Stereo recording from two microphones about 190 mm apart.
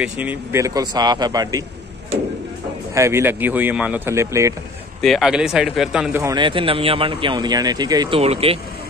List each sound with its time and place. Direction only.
0.0 s speech: 10° right (ahead or behind)
2.9 s speech: 15° right (ahead or behind)
5.0 s speech: centre (ahead or behind)
6.2 s speech: 25° right (ahead or behind)
8.2 s speech: 30° right (ahead or behind)